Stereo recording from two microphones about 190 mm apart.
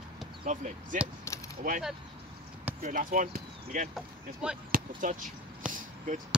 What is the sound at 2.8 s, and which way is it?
Speech, 45° right (ahead or behind).